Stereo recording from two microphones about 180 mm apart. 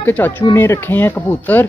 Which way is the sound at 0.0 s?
10° left (ahead or behind).